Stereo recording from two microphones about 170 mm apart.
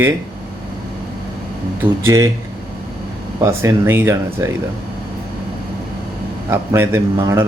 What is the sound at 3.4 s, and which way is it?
Speech, 15° right (ahead or behind).